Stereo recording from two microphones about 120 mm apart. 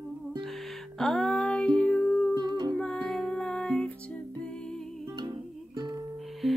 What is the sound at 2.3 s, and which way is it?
Humming, 35° right (ahead or behind).